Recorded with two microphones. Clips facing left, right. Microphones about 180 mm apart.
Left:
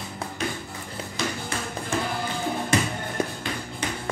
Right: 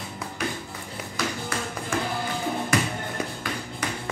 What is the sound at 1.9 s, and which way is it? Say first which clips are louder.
Music: even; 25° left (ahead or behind).